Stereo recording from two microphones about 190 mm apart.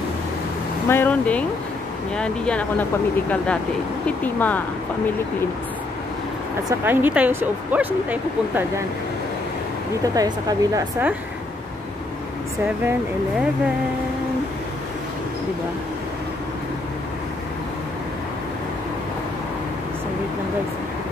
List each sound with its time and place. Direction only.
0.8 s speech: 10° left (ahead or behind)
6.7 s speech: 10° right (ahead or behind)
10.1 s a woman's voice: 20° right (ahead or behind)